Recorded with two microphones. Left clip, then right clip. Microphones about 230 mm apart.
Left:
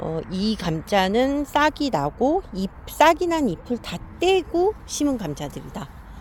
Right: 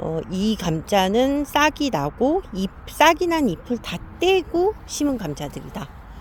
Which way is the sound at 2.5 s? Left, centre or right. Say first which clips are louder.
Right 2 dB; left.